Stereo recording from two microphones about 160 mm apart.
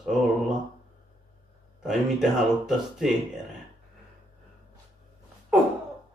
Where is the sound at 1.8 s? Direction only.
5° right (ahead or behind).